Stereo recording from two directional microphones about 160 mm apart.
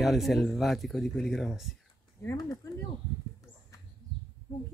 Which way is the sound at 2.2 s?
20° left (ahead or behind).